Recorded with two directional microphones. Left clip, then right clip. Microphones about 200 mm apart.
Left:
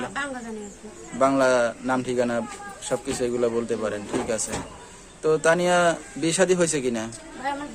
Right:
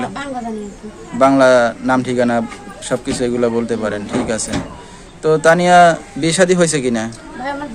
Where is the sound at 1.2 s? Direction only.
5° left (ahead or behind).